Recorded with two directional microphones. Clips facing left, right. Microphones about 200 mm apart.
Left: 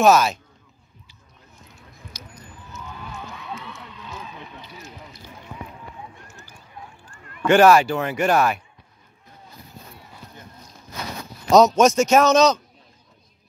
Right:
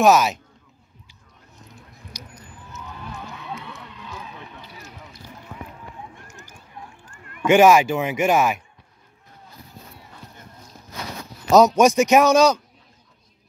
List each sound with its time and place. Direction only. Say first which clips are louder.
0.0 s speech: even; 15° right (ahead or behind)
6.2 s a sound: right 1 dB; 45° right (ahead or behind)
7.4 s speech: even; 15° right (ahead or behind)
11.5 s speech: even; 10° right (ahead or behind)